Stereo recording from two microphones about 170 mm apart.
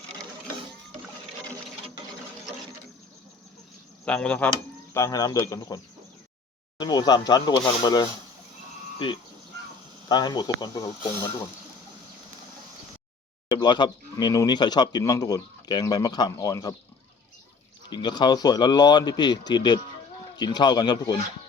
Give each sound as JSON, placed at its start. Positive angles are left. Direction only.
{"t": 4.0, "sound": "speech", "side_deg": 5}
{"t": 4.9, "sound": "speech", "side_deg": 20}
{"t": 10.1, "sound": "speech", "side_deg": 25}
{"t": 13.5, "sound": "speech", "side_deg": 25}
{"t": 17.8, "sound": "speech", "side_deg": 25}